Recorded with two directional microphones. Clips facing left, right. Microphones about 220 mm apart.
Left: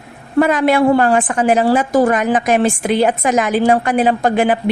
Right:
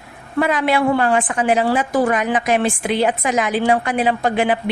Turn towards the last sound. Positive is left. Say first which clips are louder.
# left 3 dB
turn(degrees=45)  # may be behind; listen again after turning